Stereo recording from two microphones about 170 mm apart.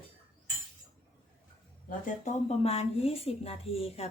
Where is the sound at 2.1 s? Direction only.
40° left (ahead or behind).